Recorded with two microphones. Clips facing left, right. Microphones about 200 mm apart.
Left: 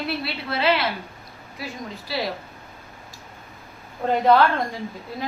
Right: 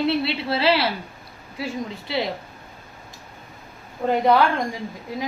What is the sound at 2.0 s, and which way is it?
Speech, 20° right (ahead or behind).